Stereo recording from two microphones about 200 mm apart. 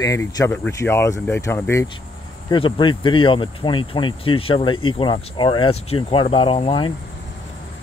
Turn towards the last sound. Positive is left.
turn(degrees=25)  # may be behind; listen again after turning